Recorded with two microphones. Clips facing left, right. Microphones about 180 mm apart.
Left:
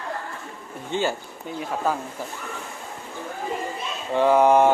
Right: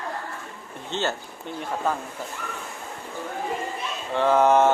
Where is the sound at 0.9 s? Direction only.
10° left (ahead or behind).